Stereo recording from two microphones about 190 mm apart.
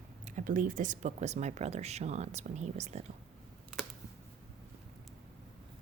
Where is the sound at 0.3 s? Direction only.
45° right (ahead or behind).